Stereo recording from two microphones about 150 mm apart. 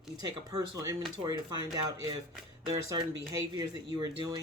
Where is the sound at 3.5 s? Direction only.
30° right (ahead or behind).